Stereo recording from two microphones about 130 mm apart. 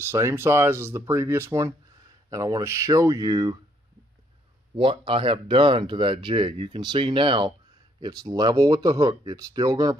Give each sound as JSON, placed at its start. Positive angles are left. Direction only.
{"t": 0.0, "sound": "speech", "side_deg": -20}
{"t": 4.7, "sound": "speech", "side_deg": -40}